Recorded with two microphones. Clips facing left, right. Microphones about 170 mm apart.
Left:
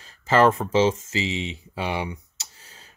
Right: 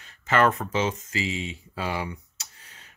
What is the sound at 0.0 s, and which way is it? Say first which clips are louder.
Speech: left 4 dB; 30° left (ahead or behind).